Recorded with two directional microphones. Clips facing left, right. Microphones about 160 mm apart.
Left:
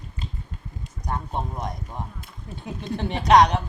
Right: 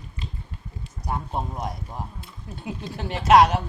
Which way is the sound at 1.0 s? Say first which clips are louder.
Even; 5° right (ahead or behind).